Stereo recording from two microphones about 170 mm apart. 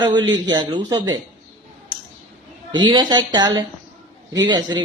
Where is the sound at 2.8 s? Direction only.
25° right (ahead or behind).